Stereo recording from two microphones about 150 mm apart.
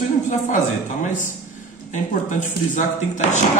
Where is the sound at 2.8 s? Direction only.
55° left (ahead or behind).